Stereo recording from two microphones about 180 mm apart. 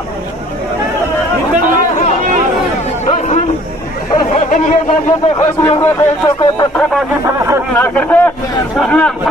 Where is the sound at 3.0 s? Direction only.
45° left (ahead or behind).